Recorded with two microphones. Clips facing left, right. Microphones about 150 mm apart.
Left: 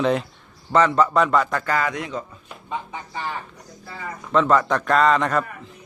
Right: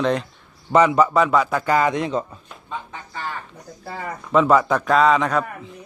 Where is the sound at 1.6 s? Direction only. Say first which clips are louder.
Right 5 dB; 20° right (ahead or behind).